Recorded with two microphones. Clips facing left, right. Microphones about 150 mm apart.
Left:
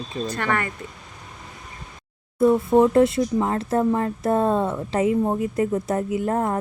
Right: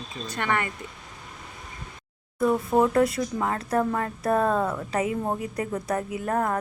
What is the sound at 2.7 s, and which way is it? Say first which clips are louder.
Speech: left 4 dB; 25° left (ahead or behind).